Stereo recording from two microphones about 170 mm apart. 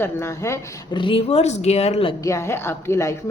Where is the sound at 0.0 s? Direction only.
15° left (ahead or behind); by 2.1 s 35° left (ahead or behind).